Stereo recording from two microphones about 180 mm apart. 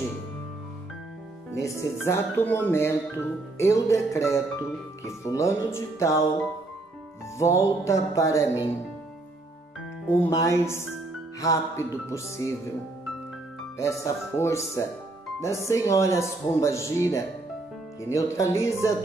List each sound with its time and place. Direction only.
1.6 s speech: 15° left (ahead or behind)
7.3 s speech: 15° left (ahead or behind)
10.2 s speech: 15° left (ahead or behind)
13.7 s speech: 15° left (ahead or behind)